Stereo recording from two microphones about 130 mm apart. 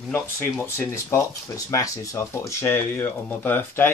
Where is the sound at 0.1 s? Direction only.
15° left (ahead or behind).